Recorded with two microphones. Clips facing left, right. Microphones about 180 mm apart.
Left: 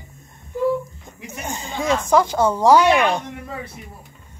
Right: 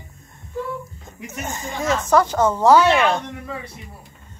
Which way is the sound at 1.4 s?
15° left (ahead or behind).